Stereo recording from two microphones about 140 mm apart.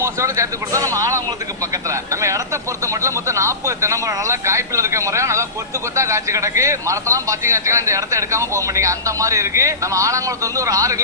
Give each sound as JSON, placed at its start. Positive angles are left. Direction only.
{"t": 0.0, "sound": "a man's voice", "side_deg": -20}